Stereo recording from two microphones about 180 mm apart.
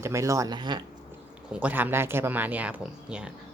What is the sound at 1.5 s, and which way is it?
Speech, 10° right (ahead or behind).